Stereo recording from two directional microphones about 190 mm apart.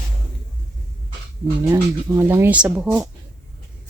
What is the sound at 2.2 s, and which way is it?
Speech, 15° right (ahead or behind).